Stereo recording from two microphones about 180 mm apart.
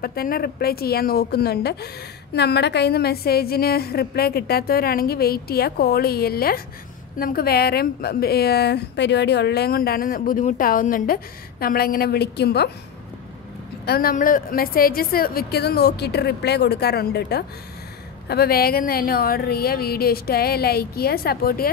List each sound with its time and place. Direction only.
0.0 s a woman's voice: 55° left (ahead or behind)
13.8 s a woman's voice: 55° left (ahead or behind)